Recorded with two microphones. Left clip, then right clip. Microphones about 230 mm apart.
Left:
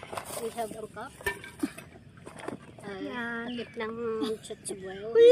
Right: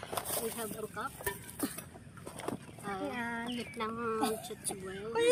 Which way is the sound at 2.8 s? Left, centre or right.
Centre.